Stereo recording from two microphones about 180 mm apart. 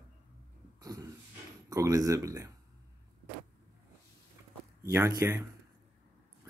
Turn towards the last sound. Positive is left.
turn(degrees=-15)  # may be behind; listen again after turning